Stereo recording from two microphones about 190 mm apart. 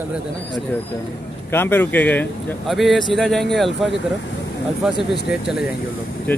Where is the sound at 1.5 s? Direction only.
10° left (ahead or behind).